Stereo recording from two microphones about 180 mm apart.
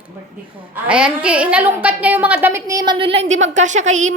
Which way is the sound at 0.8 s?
5° right (ahead or behind).